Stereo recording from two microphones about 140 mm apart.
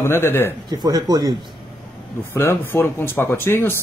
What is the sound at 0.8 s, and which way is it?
Speech, 30° right (ahead or behind).